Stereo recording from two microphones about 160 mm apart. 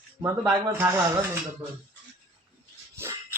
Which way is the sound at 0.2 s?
15° right (ahead or behind).